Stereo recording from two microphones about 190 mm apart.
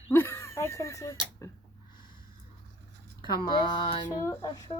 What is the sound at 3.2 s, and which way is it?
A woman's voice, 25° left (ahead or behind).